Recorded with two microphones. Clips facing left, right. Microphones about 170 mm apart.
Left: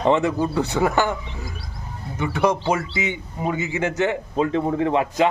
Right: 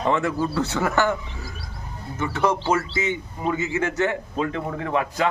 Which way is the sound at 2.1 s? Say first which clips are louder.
Left 2 dB; 15° left (ahead or behind).